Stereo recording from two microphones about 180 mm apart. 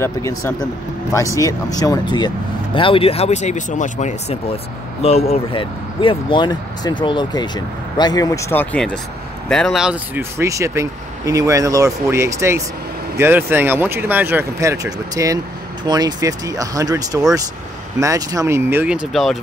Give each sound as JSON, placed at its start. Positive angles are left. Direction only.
{"t": 0.0, "sound": "speech", "side_deg": 15}
{"t": 10.3, "sound": "speech", "side_deg": -15}